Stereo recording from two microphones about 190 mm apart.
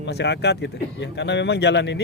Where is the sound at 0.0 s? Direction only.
65° left (ahead or behind).